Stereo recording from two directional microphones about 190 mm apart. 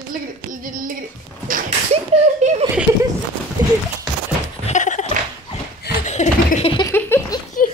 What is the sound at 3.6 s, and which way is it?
Clip-clop, 20° right (ahead or behind).